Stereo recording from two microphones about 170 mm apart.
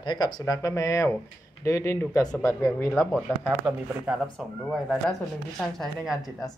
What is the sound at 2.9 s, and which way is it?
Speech, centre (ahead or behind).